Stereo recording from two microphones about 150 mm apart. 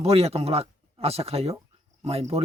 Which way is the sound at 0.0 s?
45° right (ahead or behind).